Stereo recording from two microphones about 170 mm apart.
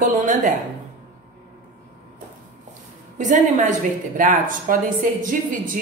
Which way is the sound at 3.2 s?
45° right (ahead or behind).